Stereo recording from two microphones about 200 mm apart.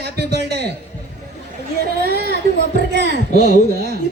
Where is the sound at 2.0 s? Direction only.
50° right (ahead or behind).